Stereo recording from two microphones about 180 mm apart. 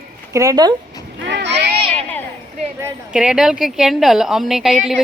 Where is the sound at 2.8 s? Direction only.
5° right (ahead or behind).